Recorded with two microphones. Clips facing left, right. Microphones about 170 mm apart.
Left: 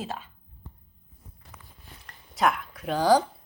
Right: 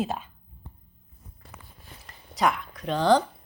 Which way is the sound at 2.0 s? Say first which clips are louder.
Even; centre (ahead or behind).